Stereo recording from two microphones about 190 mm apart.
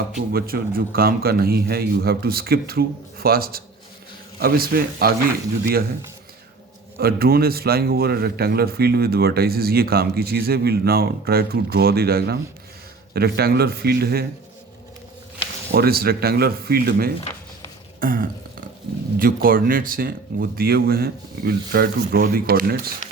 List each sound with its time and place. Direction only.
0.3 s speech: 50° right (ahead or behind)
7.0 s a man's voice: 55° right (ahead or behind)
15.7 s speech: 55° right (ahead or behind)